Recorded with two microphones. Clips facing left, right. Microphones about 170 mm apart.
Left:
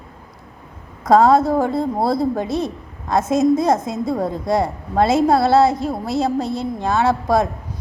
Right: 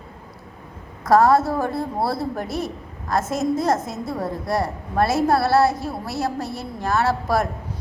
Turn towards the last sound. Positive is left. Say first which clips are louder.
# left 4 dB
turn(degrees=20)  # may be behind; listen again after turning